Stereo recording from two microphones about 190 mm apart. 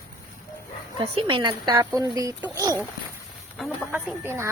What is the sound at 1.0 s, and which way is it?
Speech, 30° right (ahead or behind).